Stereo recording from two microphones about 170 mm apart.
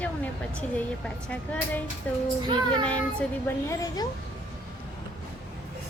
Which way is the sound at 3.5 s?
20° left (ahead or behind).